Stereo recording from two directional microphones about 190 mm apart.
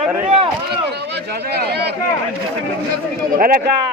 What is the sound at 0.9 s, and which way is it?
Speech, 60° right (ahead or behind).